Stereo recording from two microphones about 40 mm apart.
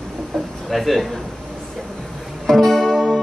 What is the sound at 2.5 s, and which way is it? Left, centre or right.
Music, centre.